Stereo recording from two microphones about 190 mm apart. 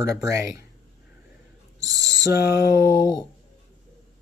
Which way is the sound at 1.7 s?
70° left (ahead or behind).